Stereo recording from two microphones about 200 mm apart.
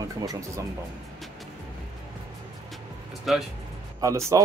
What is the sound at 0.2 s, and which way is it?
Speech, 15° right (ahead or behind).